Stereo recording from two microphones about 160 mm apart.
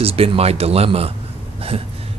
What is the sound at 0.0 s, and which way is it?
Speech, 40° right (ahead or behind).